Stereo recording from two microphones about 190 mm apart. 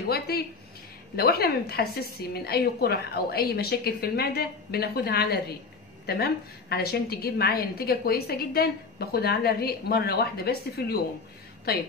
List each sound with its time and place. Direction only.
0.1 s a woman's voice: 55° left (ahead or behind)